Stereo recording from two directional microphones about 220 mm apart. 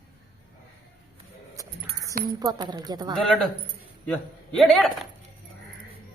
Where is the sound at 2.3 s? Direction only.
15° right (ahead or behind).